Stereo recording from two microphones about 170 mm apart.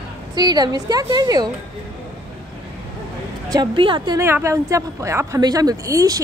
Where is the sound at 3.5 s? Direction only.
25° right (ahead or behind).